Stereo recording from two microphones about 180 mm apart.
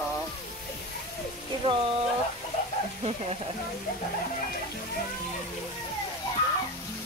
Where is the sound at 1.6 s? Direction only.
30° right (ahead or behind).